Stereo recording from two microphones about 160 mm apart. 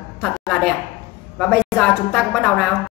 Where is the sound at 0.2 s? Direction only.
5° left (ahead or behind).